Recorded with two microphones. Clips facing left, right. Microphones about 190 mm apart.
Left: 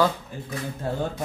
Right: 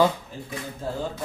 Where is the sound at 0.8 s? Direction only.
60° left (ahead or behind).